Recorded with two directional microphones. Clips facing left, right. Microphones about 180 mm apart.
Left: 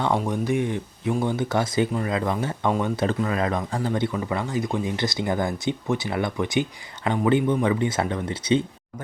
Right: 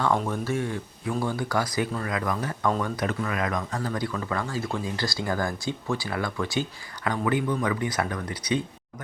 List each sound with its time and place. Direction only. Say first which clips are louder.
0.0 s speech: left 2 dB; 15° left (ahead or behind)